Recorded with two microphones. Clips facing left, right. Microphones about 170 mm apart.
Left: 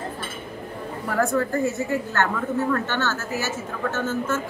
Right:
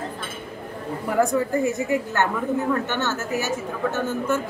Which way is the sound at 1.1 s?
15° right (ahead or behind).